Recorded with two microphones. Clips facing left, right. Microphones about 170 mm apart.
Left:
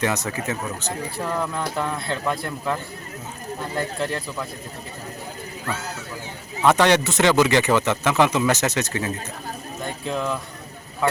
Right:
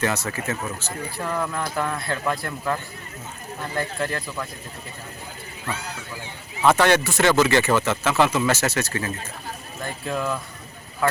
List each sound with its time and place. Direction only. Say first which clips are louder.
0.0 s speech: left 1 dB; 15° left (ahead or behind)
1.1 s speech: even; centre (ahead or behind)
3.8 s speech: even; centre (ahead or behind)
6.7 s speech: left 1 dB; 15° left (ahead or behind)
9.8 s speech: even; centre (ahead or behind)